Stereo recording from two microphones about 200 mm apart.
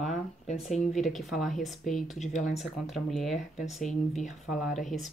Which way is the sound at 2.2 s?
35° left (ahead or behind).